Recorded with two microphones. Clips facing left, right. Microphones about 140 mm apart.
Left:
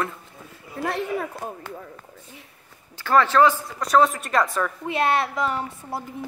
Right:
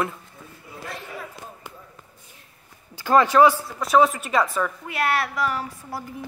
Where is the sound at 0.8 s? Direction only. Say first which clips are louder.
Left 10 dB; 70° left (ahead or behind).